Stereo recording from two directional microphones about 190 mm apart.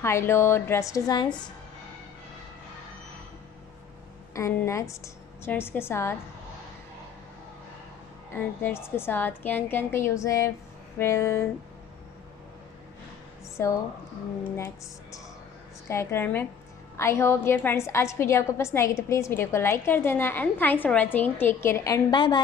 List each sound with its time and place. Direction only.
0.0 s a woman's voice: 15° left (ahead or behind)
4.4 s a woman's voice: 15° left (ahead or behind)
8.6 s a woman's voice: 10° left (ahead or behind)
13.6 s a woman's voice: 15° left (ahead or behind)